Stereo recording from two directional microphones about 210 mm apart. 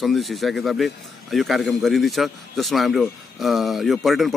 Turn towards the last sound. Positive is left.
turn(degrees=0)  # may be behind; listen again after turning